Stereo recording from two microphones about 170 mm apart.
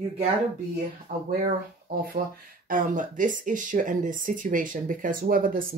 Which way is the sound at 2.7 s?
50° right (ahead or behind).